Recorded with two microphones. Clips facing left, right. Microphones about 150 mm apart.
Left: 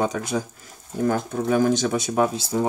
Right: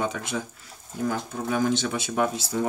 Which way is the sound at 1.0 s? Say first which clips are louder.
Left 5 dB; 50° left (ahead or behind).